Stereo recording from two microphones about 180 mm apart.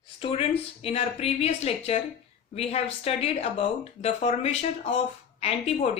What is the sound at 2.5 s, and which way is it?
A woman's voice, 35° left (ahead or behind).